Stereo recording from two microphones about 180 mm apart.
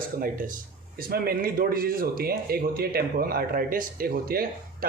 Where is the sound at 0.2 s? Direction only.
45° right (ahead or behind).